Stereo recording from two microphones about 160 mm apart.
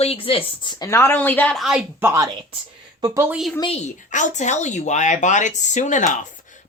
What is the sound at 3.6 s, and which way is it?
A woman's voice, 40° left (ahead or behind).